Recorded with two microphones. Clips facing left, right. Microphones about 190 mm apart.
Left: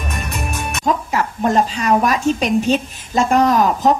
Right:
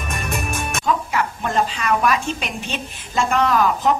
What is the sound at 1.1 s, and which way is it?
A woman's voice, 40° left (ahead or behind).